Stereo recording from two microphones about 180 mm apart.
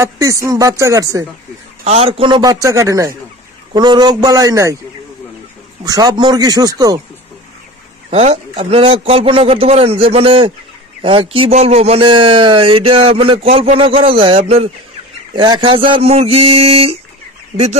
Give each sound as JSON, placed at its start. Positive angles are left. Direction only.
{"t": 0.0, "sound": "speech", "side_deg": -15}
{"t": 1.9, "sound": "a man's voice", "side_deg": -35}
{"t": 5.9, "sound": "a man's voice", "side_deg": -20}
{"t": 8.1, "sound": "a man's voice", "side_deg": -35}